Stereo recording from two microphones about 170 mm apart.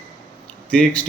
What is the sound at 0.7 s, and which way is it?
Speech, 5° left (ahead or behind).